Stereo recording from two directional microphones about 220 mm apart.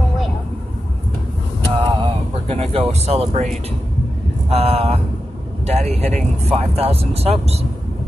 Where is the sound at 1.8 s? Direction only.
20° right (ahead or behind).